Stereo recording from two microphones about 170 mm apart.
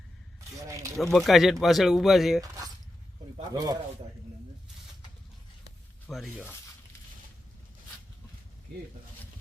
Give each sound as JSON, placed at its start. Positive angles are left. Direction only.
{"t": 0.7, "sound": "speech", "side_deg": -20}
{"t": 1.1, "sound": "speech", "side_deg": 0}
{"t": 3.5, "sound": "speech", "side_deg": -20}
{"t": 6.1, "sound": "speech", "side_deg": 0}